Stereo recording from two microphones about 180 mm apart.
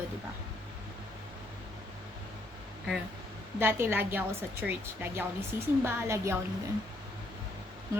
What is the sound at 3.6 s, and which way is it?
Speech, 10° right (ahead or behind).